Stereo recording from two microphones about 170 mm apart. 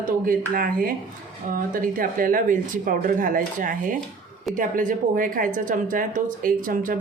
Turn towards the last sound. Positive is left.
turn(degrees=-55)  # may be behind; listen again after turning